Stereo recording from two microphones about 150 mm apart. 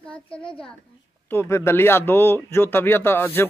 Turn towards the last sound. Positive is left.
turn(degrees=15)  # may be behind; listen again after turning